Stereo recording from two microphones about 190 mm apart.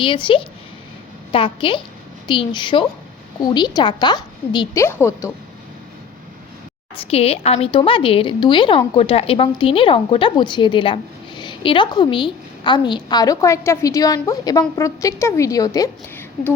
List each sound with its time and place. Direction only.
0.0 s a woman's voice: 25° left (ahead or behind)
6.9 s a woman's voice: 30° left (ahead or behind); by 16.5 s 15° left (ahead or behind)